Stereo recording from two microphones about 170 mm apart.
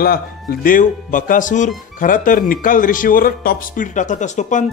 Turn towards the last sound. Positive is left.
turn(degrees=45)  # may be behind; listen again after turning